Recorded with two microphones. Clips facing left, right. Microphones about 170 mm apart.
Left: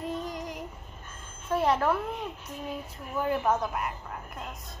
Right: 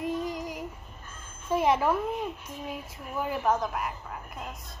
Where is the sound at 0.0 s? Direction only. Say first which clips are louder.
Right 3 dB; 5° right (ahead or behind).